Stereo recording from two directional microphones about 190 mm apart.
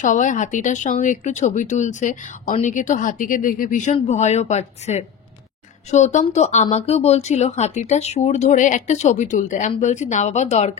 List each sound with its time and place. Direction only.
0.0 s speech: 40° left (ahead or behind)